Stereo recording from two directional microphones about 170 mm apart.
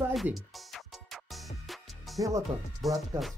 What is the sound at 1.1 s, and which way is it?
Music, centre (ahead or behind).